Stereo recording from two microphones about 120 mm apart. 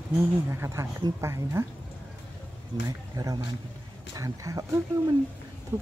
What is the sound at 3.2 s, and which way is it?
A man's voice, 30° right (ahead or behind).